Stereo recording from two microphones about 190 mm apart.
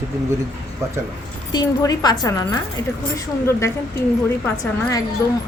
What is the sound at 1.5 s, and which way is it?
Speech, 20° left (ahead or behind).